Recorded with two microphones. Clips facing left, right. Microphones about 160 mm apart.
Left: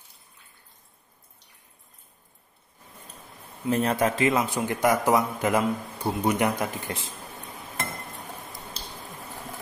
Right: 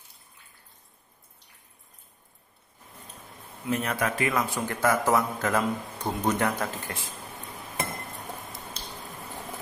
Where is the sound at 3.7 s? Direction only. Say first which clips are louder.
Left 4 dB; 30° left (ahead or behind).